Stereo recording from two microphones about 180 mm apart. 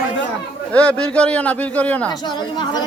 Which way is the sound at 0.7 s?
5° left (ahead or behind).